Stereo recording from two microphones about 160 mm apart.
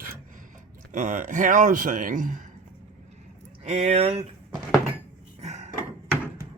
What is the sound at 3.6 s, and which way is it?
Speech, 40° right (ahead or behind).